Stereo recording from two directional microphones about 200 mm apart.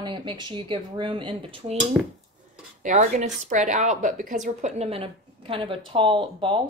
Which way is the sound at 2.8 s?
40° right (ahead or behind).